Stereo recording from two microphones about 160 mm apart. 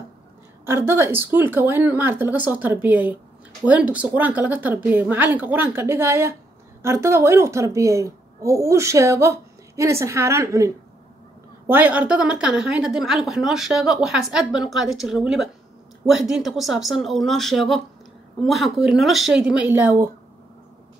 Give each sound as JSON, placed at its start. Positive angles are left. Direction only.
{"t": 0.7, "sound": "a woman's voice", "side_deg": -15}